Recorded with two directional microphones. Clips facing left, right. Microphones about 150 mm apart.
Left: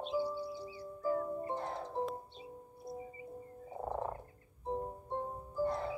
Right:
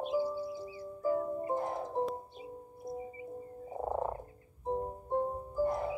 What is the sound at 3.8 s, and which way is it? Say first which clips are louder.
Frog: right 4 dB; 20° right (ahead or behind).